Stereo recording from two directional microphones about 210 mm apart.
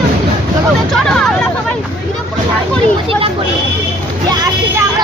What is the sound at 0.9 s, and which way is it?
Speech, centre (ahead or behind).